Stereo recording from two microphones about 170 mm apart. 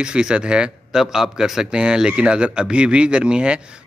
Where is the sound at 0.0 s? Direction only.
5° right (ahead or behind).